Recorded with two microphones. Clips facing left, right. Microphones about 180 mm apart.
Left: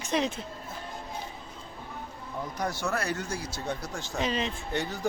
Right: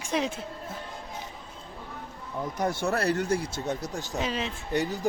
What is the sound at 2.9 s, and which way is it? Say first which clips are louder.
Speech: right 6 dB; 35° right (ahead or behind).